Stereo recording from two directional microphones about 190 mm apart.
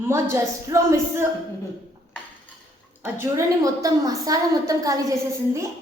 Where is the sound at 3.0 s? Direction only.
15° right (ahead or behind).